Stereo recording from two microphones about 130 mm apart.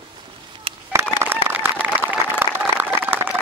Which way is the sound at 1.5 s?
15° right (ahead or behind).